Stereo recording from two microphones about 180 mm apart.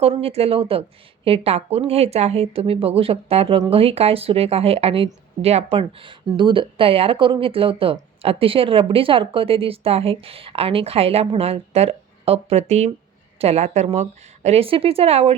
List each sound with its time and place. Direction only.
0.0 s a woman's voice: 35° right (ahead or behind)